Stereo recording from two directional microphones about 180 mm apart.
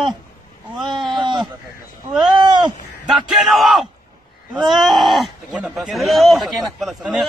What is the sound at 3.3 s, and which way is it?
Battle cry, centre (ahead or behind).